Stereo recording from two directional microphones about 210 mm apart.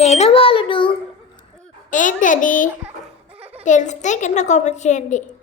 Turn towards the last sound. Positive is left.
turn(degrees=35)  # may be behind; listen again after turning